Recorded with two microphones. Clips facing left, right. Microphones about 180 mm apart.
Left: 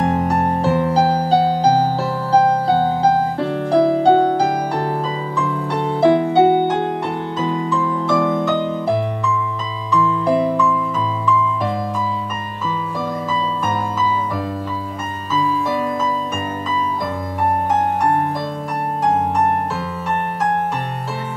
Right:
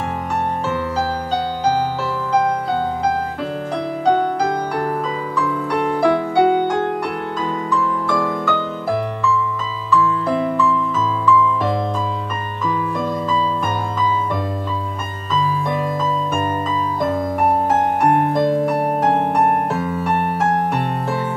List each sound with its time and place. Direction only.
0.0 s music: 35° left (ahead or behind); by 8.6 s 20° left (ahead or behind)
9.8 s music: 15° left (ahead or behind)
18.4 s music: 55° right (ahead or behind)